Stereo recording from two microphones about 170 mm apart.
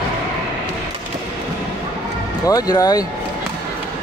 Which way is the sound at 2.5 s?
20° left (ahead or behind).